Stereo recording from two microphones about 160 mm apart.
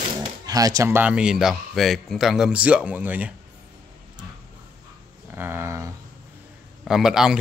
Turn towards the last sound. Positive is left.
turn(degrees=-5)  # may be behind; listen again after turning